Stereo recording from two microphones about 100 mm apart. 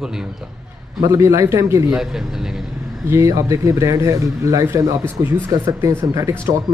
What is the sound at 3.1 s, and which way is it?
Speech, 30° right (ahead or behind).